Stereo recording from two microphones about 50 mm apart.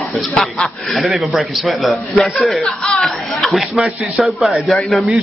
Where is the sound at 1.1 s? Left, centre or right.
Centre.